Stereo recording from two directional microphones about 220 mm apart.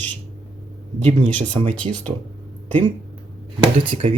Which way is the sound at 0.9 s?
30° right (ahead or behind).